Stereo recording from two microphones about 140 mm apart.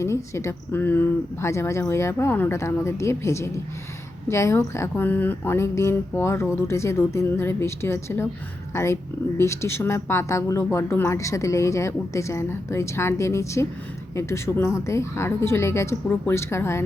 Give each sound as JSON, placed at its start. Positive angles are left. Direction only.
{"t": 0.0, "sound": "speech", "side_deg": 20}